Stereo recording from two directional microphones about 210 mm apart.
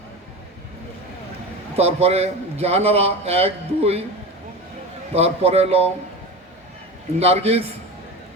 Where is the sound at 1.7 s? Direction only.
30° right (ahead or behind).